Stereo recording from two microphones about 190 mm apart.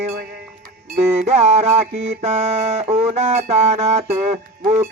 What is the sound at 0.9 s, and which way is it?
Music, 35° right (ahead or behind).